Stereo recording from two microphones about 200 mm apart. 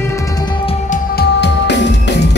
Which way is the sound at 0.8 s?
55° left (ahead or behind).